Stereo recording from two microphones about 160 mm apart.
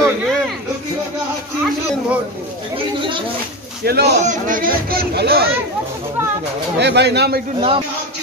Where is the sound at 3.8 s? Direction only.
85° right.